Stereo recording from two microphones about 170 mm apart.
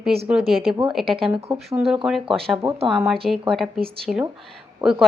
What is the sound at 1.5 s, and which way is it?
A woman's voice, 5° right (ahead or behind).